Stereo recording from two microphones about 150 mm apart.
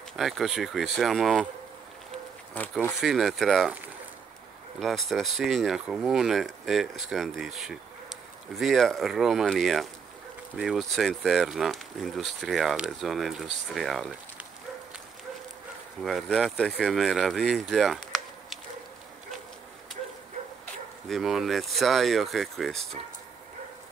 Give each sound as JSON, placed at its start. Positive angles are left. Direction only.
{"t": 0.1, "sound": "speech", "side_deg": 0}
{"t": 2.5, "sound": "speech", "side_deg": 10}
{"t": 3.0, "sound": "speech", "side_deg": 0}
{"t": 4.7, "sound": "speech", "side_deg": 0}
{"t": 16.0, "sound": "speech", "side_deg": 0}
{"t": 21.1, "sound": "speech", "side_deg": 0}